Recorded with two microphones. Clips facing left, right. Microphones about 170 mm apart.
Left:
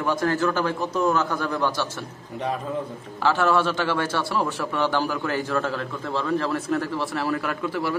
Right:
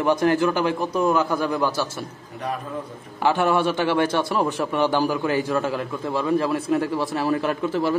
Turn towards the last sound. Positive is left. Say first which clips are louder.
# right 4 dB
turn(degrees=-25)  # may be behind; listen again after turning